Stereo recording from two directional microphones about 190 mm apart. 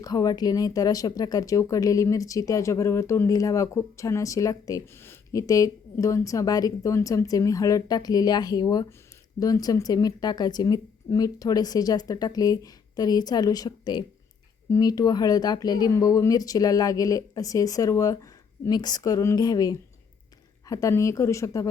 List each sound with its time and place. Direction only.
0.0 s speech: 20° left (ahead or behind)